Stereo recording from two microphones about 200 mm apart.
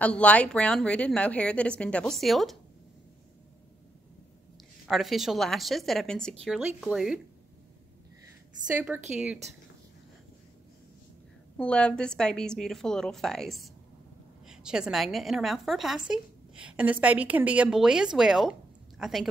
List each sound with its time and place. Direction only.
0.0 s a woman's voice: 5° left (ahead or behind)
4.8 s a woman's voice: centre (ahead or behind)
8.7 s speech: 10° right (ahead or behind)
11.5 s a woman's voice: 5° left (ahead or behind)